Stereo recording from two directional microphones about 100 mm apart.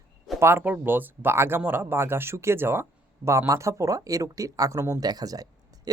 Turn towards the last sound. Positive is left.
turn(degrees=-40)  # may be behind; listen again after turning